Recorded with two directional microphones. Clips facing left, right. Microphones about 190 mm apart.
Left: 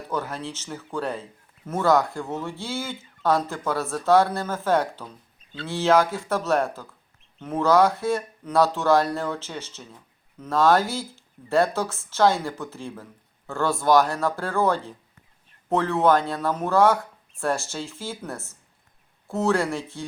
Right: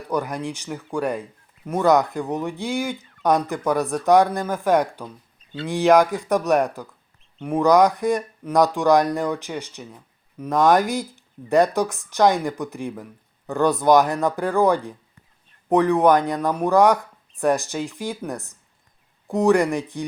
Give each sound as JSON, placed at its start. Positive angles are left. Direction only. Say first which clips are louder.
{"t": 0.1, "sound": "speech", "louder": "right 5 dB", "side_deg": -15}